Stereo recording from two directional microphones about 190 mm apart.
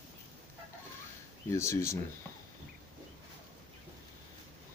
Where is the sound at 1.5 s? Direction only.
15° left (ahead or behind).